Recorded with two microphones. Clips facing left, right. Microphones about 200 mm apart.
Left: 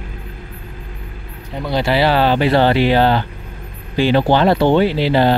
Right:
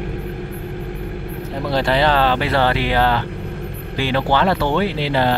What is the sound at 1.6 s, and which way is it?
Speech, centre (ahead or behind).